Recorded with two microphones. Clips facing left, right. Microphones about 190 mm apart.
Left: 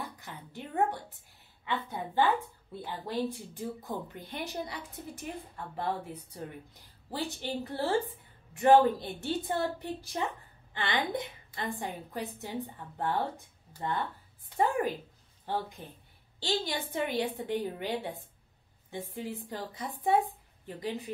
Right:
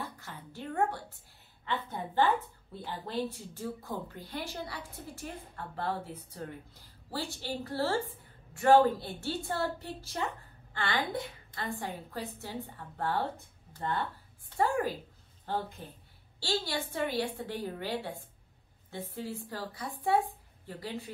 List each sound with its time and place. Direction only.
0.0 s a woman's voice: 15° left (ahead or behind)